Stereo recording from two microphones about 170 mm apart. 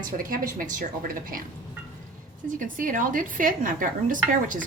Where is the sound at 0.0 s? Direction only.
55° right (ahead or behind).